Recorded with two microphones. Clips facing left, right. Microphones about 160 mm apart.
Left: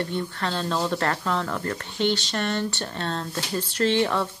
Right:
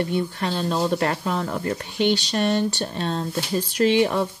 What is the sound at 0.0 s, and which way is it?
Speech, 15° right (ahead or behind).